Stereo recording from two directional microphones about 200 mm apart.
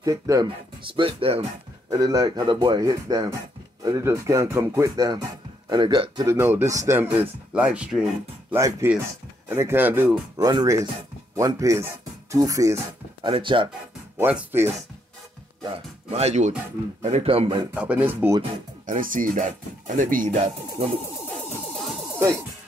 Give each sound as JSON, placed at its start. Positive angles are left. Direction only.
{"t": 0.0, "sound": "speech", "side_deg": -15}
{"t": 0.9, "sound": "a man's voice", "side_deg": -25}
{"t": 1.9, "sound": "a man's voice", "side_deg": -15}
{"t": 14.1, "sound": "speech", "side_deg": -10}
{"t": 15.6, "sound": "a man's voice", "side_deg": -30}
{"t": 17.7, "sound": "speech", "side_deg": -10}
{"t": 18.9, "sound": "speech", "side_deg": -40}